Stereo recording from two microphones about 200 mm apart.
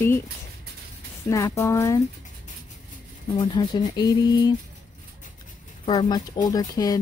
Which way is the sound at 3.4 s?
20° left (ahead or behind).